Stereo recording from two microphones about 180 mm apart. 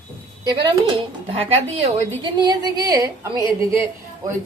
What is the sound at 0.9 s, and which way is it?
Speech, 30° right (ahead or behind).